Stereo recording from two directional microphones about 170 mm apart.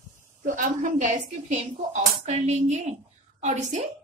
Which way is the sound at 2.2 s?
40° right (ahead or behind).